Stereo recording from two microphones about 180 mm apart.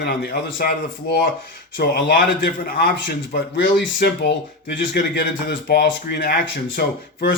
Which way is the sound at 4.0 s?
70° left (ahead or behind).